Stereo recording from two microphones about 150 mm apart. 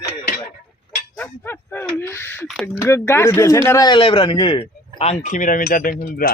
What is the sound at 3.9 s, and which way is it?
Speech, 35° left (ahead or behind).